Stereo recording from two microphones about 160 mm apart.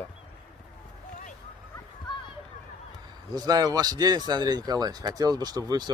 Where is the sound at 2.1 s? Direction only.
30° left (ahead or behind).